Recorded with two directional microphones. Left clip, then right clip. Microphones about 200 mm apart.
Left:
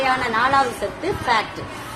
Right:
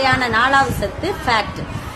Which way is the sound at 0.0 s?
25° right (ahead or behind).